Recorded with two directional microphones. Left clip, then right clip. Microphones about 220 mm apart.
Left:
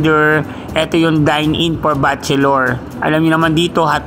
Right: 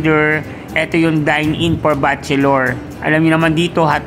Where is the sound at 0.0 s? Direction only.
20° left (ahead or behind).